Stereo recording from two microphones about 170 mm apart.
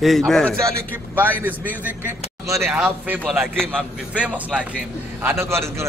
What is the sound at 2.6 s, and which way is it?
A man's voice, 5° right (ahead or behind).